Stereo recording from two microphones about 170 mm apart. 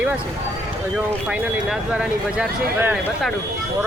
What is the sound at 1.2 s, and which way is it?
Speech, 10° right (ahead or behind).